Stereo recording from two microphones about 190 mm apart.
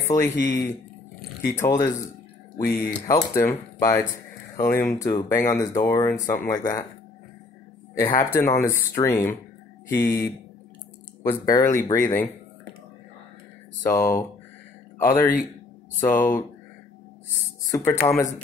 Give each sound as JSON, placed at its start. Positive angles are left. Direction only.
{"t": 0.1, "sound": "speech", "side_deg": 15}
{"t": 1.6, "sound": "speech", "side_deg": 15}
{"t": 3.1, "sound": "speech", "side_deg": 15}
{"t": 7.9, "sound": "speech", "side_deg": 15}
{"t": 13.8, "sound": "speech", "side_deg": 10}
{"t": 17.6, "sound": "speech", "side_deg": 15}